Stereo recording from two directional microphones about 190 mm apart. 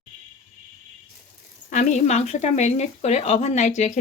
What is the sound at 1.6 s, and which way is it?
Speech, 40° left (ahead or behind).